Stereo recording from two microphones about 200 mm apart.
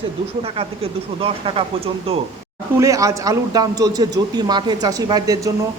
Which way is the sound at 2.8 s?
15° right (ahead or behind).